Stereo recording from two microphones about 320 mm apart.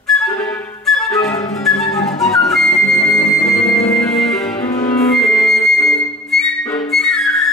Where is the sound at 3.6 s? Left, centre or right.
Centre.